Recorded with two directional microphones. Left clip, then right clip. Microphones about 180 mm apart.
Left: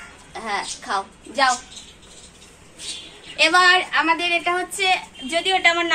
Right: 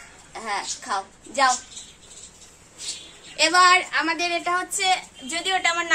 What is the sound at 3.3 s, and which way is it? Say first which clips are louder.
Speech: left 1 dB; 30° right (ahead or behind).